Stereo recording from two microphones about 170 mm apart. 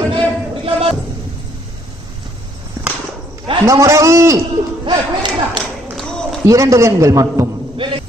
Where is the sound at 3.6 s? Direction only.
15° right (ahead or behind).